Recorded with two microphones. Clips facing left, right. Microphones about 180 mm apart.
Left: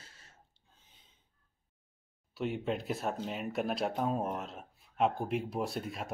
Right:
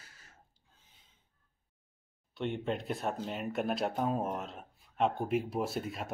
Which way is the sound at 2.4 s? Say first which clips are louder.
Even; 5° left (ahead or behind).